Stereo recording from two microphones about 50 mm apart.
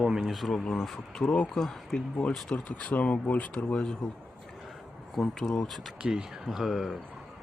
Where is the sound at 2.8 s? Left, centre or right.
Left.